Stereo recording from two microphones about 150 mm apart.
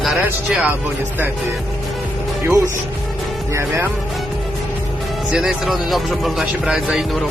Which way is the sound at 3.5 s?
15° right (ahead or behind).